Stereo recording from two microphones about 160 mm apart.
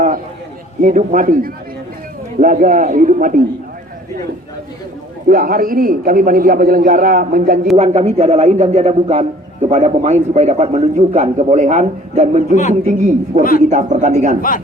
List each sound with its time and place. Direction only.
0.8 s a man's voice: 55° right (ahead or behind)
5.3 s a man's voice: 60° right (ahead or behind)
7.8 s a man's voice: 45° right (ahead or behind)